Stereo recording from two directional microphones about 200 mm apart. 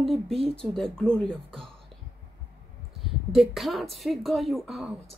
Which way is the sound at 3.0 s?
Centre (ahead or behind).